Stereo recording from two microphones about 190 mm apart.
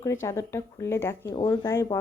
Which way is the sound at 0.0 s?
15° left (ahead or behind).